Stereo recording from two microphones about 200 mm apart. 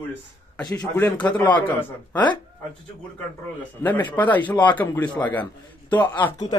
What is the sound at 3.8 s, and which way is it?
A man's voice, 10° left (ahead or behind).